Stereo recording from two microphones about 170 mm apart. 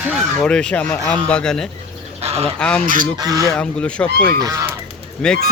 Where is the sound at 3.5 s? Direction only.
5° left (ahead or behind).